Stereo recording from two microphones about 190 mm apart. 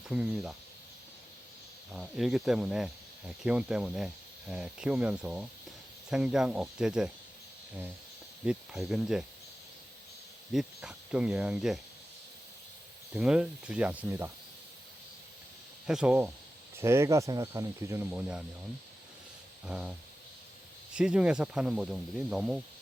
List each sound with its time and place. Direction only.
0.1 s speech: 5° right (ahead or behind)
1.9 s speech: centre (ahead or behind)
8.4 s speech: 5° right (ahead or behind)
10.5 s speech: centre (ahead or behind)
13.1 s speech: 5° right (ahead or behind)
15.9 s speech: 5° right (ahead or behind)
19.6 s speech: 5° right (ahead or behind)